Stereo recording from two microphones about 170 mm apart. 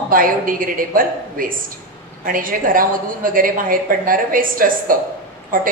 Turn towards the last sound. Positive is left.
turn(degrees=-55)  # may be behind; listen again after turning